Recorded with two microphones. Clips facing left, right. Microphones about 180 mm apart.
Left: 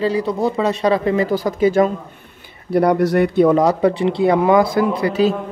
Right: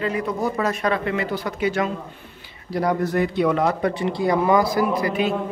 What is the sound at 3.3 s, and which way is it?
Speech, 45° left (ahead or behind).